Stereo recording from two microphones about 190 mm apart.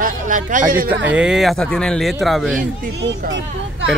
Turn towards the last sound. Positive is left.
turn(degrees=-70)  # may be behind; listen again after turning